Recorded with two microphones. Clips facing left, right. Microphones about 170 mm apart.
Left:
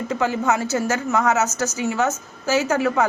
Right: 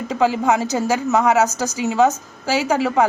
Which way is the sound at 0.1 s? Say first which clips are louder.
Right 4 dB; 15° right (ahead or behind).